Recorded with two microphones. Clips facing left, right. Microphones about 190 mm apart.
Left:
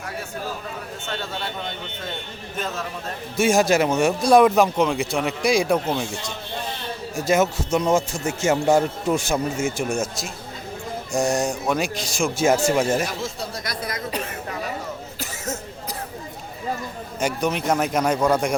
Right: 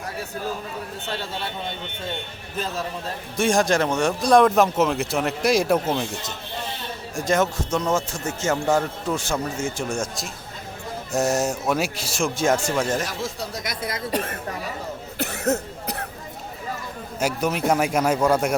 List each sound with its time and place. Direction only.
1.1 s a man's voice: 30° right (ahead or behind)
3.3 s speech: 5° left (ahead or behind)
7.2 s a man's voice: 5° left (ahead or behind)
11.1 s speech: 5° right (ahead or behind)
13.7 s speech: 25° right (ahead or behind)
14.1 s speech: 50° right (ahead or behind)
15.2 s cough: 60° right (ahead or behind)
17.2 s a man's voice: 5° right (ahead or behind)